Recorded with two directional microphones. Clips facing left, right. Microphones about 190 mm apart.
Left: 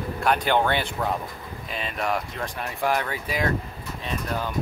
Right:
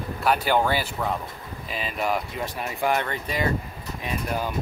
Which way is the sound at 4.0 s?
10° right (ahead or behind).